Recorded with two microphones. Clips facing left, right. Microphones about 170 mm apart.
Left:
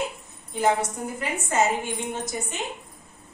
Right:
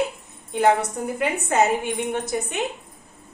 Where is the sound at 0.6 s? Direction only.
65° right (ahead or behind).